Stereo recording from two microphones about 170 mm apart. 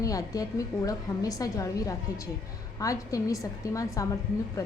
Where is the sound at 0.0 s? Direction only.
20° left (ahead or behind).